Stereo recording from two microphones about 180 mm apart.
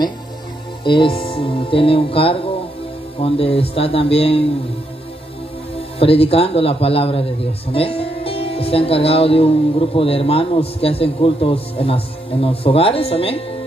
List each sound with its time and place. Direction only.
0.8 s a man's voice: 30° left (ahead or behind)
5.9 s a man's voice: 30° left (ahead or behind)